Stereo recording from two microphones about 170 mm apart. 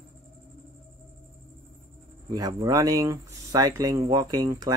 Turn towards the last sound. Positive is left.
turn(degrees=-20)  # may be behind; listen again after turning